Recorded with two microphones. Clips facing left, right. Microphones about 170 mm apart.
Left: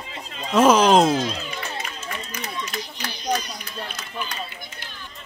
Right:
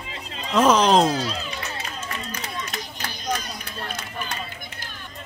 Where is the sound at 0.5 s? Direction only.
5° left (ahead or behind).